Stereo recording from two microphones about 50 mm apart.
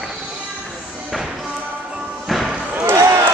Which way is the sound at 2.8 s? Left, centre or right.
Right.